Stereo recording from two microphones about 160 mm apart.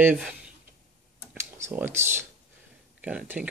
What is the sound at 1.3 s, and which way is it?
Computer keyboard, 15° right (ahead or behind).